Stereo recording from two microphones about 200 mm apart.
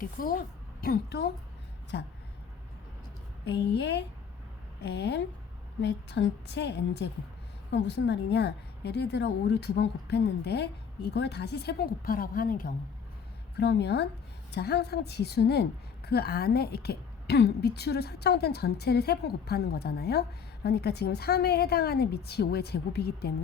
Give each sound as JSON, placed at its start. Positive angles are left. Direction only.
{"t": 0.0, "sound": "a woman's voice", "side_deg": 45}
{"t": 3.4, "sound": "a woman's voice", "side_deg": 60}
{"t": 13.6, "sound": "a woman's voice", "side_deg": 55}